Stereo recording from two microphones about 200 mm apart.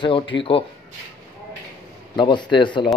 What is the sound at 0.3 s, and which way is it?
Speech, 25° left (ahead or behind).